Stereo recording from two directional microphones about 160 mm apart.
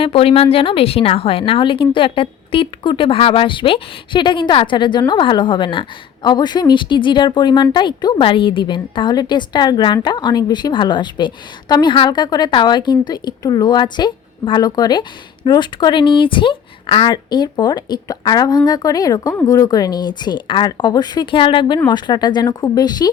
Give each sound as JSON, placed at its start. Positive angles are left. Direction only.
{"t": 0.0, "sound": "a woman's voice", "side_deg": 35}